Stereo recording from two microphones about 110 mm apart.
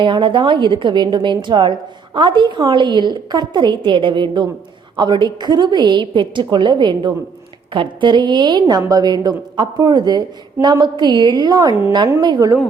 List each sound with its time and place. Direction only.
0.0 s a woman's voice: 50° right (ahead or behind); by 12.2 s 30° right (ahead or behind)
12.2 s a woman's voice: 40° right (ahead or behind)